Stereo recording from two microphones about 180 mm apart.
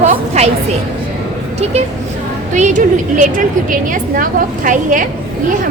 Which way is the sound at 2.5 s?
45° right (ahead or behind).